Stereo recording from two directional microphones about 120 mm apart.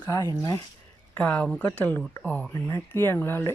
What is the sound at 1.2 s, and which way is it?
Speech, 10° left (ahead or behind).